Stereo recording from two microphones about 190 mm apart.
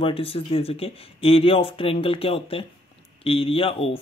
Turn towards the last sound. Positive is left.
turn(degrees=30)  # may be behind; listen again after turning